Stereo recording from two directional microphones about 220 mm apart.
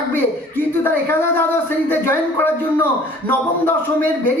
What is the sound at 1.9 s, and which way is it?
Speech, 10° left (ahead or behind).